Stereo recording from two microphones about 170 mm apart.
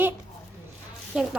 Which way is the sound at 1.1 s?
5° right (ahead or behind).